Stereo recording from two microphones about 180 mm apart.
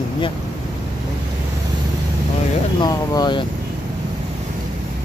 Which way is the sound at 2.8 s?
20° left (ahead or behind).